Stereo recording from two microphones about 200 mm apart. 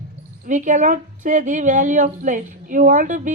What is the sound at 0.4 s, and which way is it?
A woman's voice, 40° right (ahead or behind).